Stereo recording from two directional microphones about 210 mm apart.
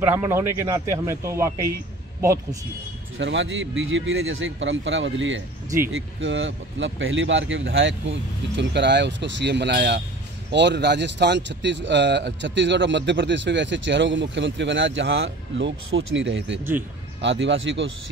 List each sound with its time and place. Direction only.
0.0 s speech: 10° right (ahead or behind)
3.2 s speech: 60° right (ahead or behind)